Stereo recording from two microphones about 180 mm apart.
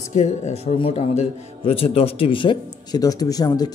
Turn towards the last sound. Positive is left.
turn(degrees=20)  # may be behind; listen again after turning